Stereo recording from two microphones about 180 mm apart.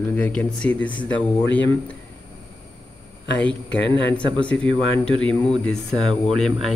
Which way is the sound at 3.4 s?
85° left.